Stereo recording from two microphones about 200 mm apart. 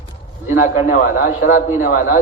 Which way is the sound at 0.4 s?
40° left (ahead or behind).